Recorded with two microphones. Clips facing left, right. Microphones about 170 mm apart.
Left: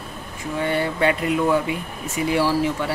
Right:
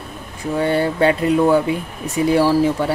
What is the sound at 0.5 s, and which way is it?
Speech, 35° right (ahead or behind).